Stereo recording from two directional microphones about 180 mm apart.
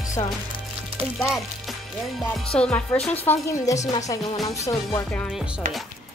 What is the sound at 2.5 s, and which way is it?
A woman's voice, 5° left (ahead or behind).